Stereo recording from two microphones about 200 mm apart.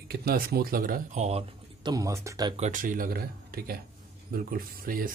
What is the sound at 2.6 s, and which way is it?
Speech, 40° right (ahead or behind).